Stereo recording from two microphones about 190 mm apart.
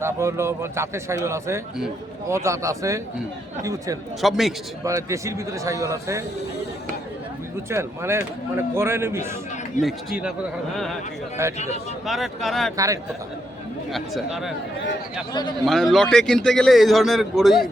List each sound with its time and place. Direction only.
0.0 s speech: 15° right (ahead or behind)
4.2 s a man's voice: centre (ahead or behind)
4.8 s speech: 15° right (ahead or behind)
7.7 s speech: 15° right (ahead or behind)
9.8 s a man's voice: 5° right (ahead or behind)
11.5 s speech: 35° left (ahead or behind)
12.0 s a man's voice: centre (ahead or behind)
12.7 s speech: 15° right (ahead or behind)
15.3 s a man's voice: 20° left (ahead or behind)
15.6 s a man's voice: centre (ahead or behind)